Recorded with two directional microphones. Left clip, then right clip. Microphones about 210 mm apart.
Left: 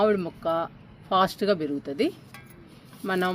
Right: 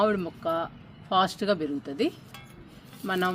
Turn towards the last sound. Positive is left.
turn(degrees=30)  # may be behind; listen again after turning